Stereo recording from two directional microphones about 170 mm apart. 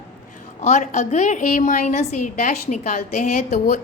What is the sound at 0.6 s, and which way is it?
A woman's voice, 45° left (ahead or behind).